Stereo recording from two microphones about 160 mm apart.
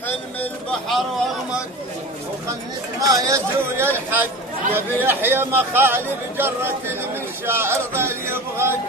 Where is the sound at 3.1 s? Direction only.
20° right (ahead or behind).